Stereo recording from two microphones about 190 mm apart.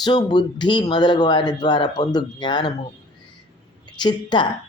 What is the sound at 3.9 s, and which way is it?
Speech, 20° left (ahead or behind).